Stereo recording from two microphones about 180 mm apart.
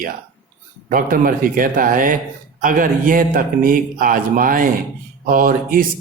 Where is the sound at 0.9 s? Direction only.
50° right (ahead or behind).